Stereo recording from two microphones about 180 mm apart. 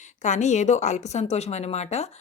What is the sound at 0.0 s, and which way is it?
A woman's voice, 40° left (ahead or behind).